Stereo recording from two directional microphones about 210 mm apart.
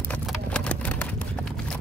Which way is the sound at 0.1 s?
5° left (ahead or behind).